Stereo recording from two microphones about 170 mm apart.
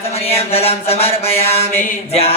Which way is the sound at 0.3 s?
35° left (ahead or behind).